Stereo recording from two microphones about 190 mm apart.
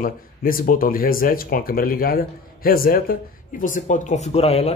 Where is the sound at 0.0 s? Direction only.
50° left (ahead or behind).